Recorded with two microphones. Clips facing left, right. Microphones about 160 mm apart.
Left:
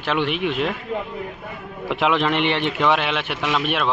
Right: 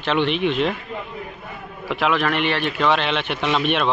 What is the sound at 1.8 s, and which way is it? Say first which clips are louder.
Speech: left 1 dB; 20° left (ahead or behind).